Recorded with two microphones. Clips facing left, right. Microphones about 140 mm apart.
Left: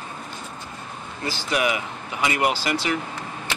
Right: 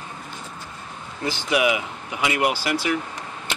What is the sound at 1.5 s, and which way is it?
Speech, 10° right (ahead or behind).